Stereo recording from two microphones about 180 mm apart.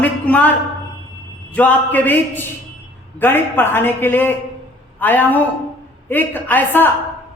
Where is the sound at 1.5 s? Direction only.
10° left (ahead or behind).